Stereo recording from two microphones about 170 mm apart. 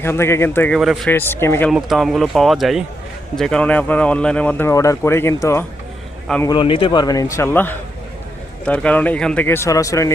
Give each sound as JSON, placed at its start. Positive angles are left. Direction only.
{"t": 0.0, "sound": "speech", "side_deg": 15}
{"t": 0.8, "sound": "speech", "side_deg": 0}
{"t": 1.1, "sound": "speech", "side_deg": 15}
{"t": 1.7, "sound": "a man's voice", "side_deg": 0}